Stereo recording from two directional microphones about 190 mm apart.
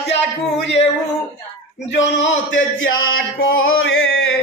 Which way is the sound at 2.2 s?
80° left.